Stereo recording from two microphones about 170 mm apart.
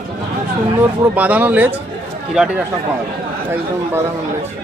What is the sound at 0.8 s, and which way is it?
Speech, 10° right (ahead or behind).